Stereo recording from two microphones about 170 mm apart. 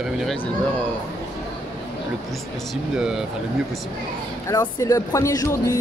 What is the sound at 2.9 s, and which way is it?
Speech, 5° right (ahead or behind).